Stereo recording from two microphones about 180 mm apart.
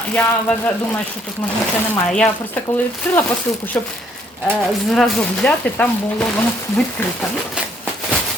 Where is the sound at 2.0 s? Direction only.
5° left (ahead or behind).